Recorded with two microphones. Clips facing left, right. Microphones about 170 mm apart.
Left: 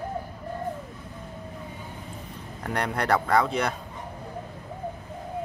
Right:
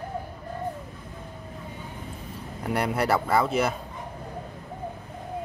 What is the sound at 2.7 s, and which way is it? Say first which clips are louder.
Speech: right 1 dB; 5° right (ahead or behind).